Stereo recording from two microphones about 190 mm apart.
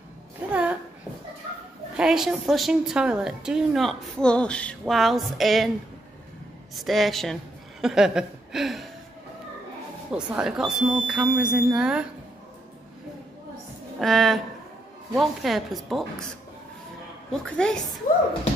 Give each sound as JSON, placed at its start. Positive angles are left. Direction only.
{"t": 0.5, "sound": "a sound", "side_deg": -5}
{"t": 2.0, "sound": "a woman's voice", "side_deg": 0}
{"t": 6.7, "sound": "a woman's voice", "side_deg": 0}
{"t": 10.1, "sound": "a woman's voice", "side_deg": -5}
{"t": 13.9, "sound": "a woman's voice", "side_deg": 0}
{"t": 17.3, "sound": "a woman's voice", "side_deg": 5}